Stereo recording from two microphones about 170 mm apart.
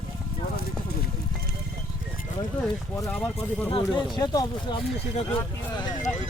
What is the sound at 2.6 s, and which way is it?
Speech, 15° left (ahead or behind).